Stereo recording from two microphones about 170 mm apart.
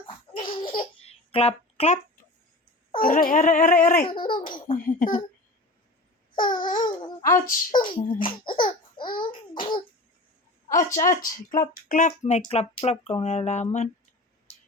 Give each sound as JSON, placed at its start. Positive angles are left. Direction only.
{"t": 0.3, "sound": "babbling", "side_deg": 30}
{"t": 3.0, "sound": "speech", "side_deg": 55}
{"t": 4.0, "sound": "a child's voice", "side_deg": 30}
{"t": 4.7, "sound": "a child's voice", "side_deg": 55}
{"t": 6.3, "sound": "babbling", "side_deg": 25}
{"t": 6.8, "sound": "speech", "side_deg": 20}
{"t": 7.3, "sound": "a child's voice", "side_deg": 55}
{"t": 7.9, "sound": "speech", "side_deg": 30}
{"t": 10.9, "sound": "speech", "side_deg": 50}